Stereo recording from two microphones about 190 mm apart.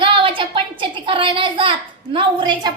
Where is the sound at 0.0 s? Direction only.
25° right (ahead or behind).